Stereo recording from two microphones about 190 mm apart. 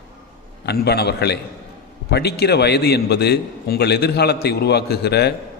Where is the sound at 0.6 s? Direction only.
60° left (ahead or behind).